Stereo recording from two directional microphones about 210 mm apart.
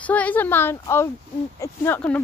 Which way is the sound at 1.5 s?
15° left (ahead or behind).